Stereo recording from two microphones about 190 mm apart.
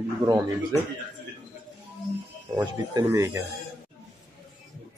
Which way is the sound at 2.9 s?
15° right (ahead or behind).